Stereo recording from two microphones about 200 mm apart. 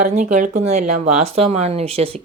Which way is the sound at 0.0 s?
40° right (ahead or behind).